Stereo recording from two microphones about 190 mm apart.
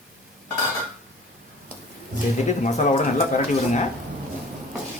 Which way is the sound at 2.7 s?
40° left (ahead or behind).